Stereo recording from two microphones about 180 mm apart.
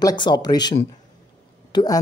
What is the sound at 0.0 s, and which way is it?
A woman's voice, 25° left (ahead or behind).